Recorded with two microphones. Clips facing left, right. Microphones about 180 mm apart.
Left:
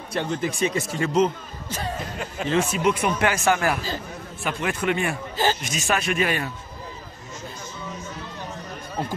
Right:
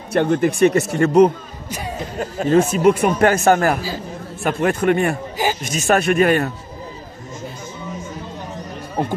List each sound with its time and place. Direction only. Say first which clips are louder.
0.1 s speech: right 9 dB; 60° right (ahead or behind)
1.7 s speech: right 2 dB; 15° right (ahead or behind)
2.1 s speech: right 9 dB; 45° right (ahead or behind)
9.0 s speech: right 7 dB; 55° right (ahead or behind)